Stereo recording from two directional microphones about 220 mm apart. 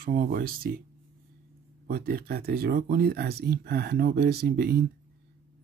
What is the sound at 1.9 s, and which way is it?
Speech, 45° right (ahead or behind).